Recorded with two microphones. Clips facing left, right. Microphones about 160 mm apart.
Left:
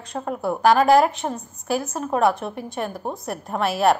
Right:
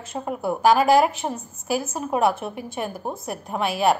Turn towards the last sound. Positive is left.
turn(degrees=0)  # may be behind; listen again after turning